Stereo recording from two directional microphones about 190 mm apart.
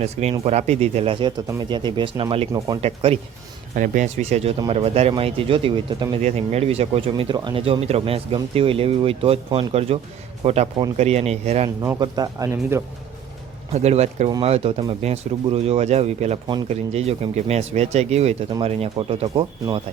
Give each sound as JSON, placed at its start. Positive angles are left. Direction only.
{"t": 0.0, "sound": "speech", "side_deg": -35}
{"t": 2.5, "sound": "speech", "side_deg": -15}
{"t": 2.8, "sound": "speech", "side_deg": -30}
{"t": 3.8, "sound": "speech", "side_deg": -45}
{"t": 11.8, "sound": "speech", "side_deg": -20}
{"t": 13.7, "sound": "speech", "side_deg": -35}